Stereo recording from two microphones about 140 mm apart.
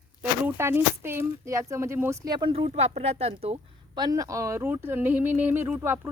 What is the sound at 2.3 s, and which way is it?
Speech, 35° right (ahead or behind).